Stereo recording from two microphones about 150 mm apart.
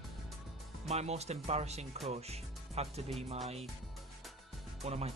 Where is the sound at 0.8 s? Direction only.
45° right (ahead or behind).